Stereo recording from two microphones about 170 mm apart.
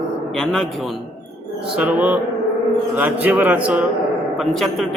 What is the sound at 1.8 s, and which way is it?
A man's voice, 10° right (ahead or behind).